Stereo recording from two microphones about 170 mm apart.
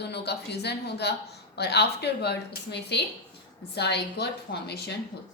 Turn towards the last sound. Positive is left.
turn(degrees=75)  # may be behind; listen again after turning